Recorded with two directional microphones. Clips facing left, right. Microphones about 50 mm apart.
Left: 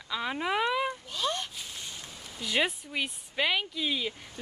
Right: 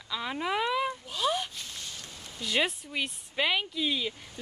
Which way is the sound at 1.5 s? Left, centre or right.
Centre.